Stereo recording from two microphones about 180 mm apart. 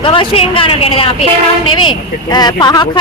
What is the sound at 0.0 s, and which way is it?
Speech, 30° left (ahead or behind).